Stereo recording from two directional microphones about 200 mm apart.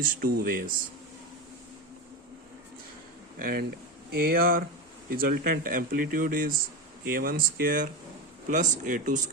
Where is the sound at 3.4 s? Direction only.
50° right (ahead or behind).